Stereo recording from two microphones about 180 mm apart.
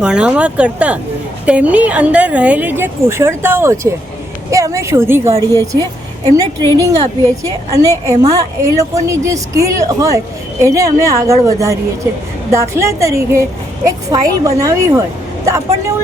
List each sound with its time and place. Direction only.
0.0 s a woman's voice: 5° right (ahead or behind)